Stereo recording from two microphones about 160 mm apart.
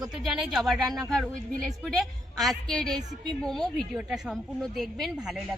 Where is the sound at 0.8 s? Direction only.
25° right (ahead or behind).